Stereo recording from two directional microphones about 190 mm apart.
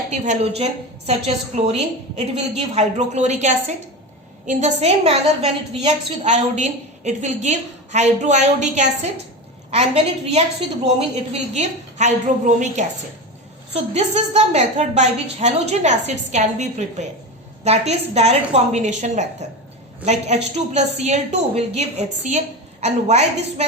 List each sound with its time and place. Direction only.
0.1 s a woman's voice: 35° right (ahead or behind)
13.9 s a woman's voice: 35° right (ahead or behind)